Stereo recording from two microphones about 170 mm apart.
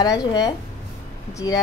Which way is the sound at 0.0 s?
20° left (ahead or behind).